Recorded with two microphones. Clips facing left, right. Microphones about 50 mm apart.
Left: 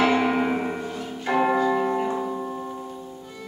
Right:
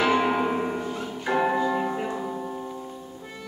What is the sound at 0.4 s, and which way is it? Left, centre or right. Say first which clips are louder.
Music: left 1 dB; centre.